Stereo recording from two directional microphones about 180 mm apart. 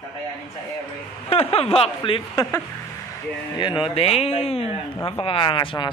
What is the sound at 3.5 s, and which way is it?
A man's voice, 25° left (ahead or behind).